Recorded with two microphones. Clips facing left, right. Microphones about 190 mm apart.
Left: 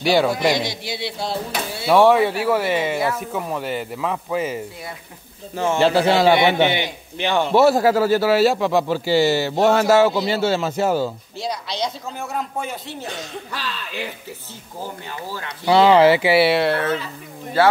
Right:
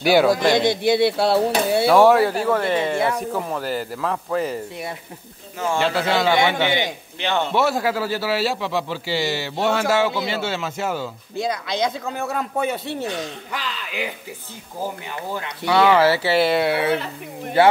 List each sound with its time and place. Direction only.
0.0 s speech: 5° right (ahead or behind)
0.5 s a man's voice: 55° right (ahead or behind)
1.9 s speech: centre (ahead or behind)
5.8 s a man's voice: 30° left (ahead or behind); by 7.4 s 15° left (ahead or behind)
7.5 s speech: 40° left (ahead or behind)
11.3 s a man's voice: 55° right (ahead or behind)
13.5 s speech: 15° right (ahead or behind)
15.4 s speech: 25° left (ahead or behind); by 16.7 s 5° left (ahead or behind)
16.7 s speech: 15° right (ahead or behind)